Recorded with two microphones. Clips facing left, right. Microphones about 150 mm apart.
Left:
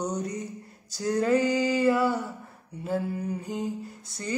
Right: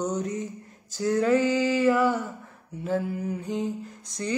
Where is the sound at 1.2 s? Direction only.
15° left (ahead or behind).